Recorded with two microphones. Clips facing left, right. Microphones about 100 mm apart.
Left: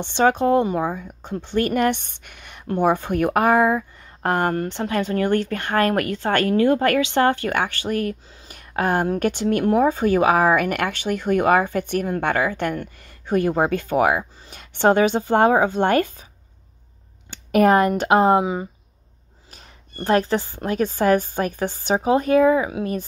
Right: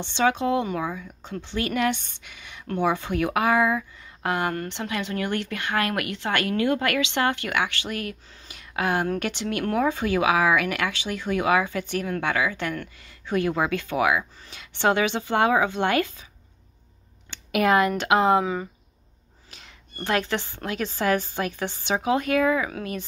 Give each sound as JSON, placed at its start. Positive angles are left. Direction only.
{"t": 0.0, "sound": "speech", "side_deg": 50}
{"t": 1.4, "sound": "speech", "side_deg": 45}
{"t": 2.8, "sound": "speech", "side_deg": 45}
{"t": 17.3, "sound": "speech", "side_deg": 40}
{"t": 18.4, "sound": "speech", "side_deg": 20}
{"t": 19.5, "sound": "speech", "side_deg": 40}